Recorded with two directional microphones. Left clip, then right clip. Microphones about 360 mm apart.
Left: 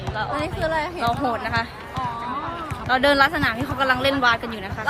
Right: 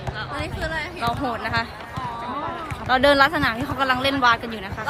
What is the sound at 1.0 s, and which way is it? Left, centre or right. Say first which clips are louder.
Speech: right 1 dB; centre.